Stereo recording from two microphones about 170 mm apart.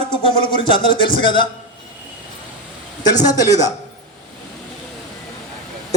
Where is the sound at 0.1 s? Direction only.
30° left (ahead or behind).